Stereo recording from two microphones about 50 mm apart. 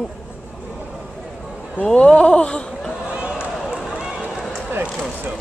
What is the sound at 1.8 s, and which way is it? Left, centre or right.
Speech, left.